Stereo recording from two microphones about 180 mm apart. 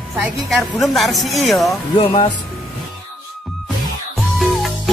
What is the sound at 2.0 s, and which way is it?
Speech, 25° left (ahead or behind).